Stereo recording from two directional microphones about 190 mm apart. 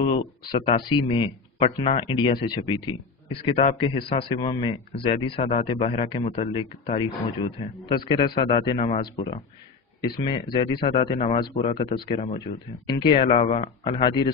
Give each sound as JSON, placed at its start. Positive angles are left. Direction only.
{"t": 0.0, "sound": "speech", "side_deg": 25}